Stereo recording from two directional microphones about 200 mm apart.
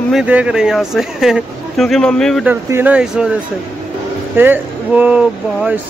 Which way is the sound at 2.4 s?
10° right (ahead or behind).